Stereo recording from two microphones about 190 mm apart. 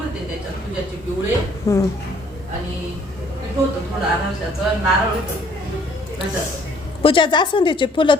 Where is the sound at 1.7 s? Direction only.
15° left (ahead or behind).